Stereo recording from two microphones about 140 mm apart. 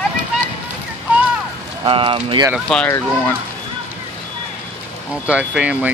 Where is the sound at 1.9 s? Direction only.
40° right (ahead or behind).